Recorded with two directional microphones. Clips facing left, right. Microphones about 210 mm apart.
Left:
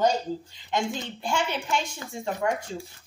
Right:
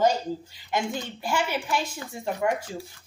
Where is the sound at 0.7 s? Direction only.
5° right (ahead or behind).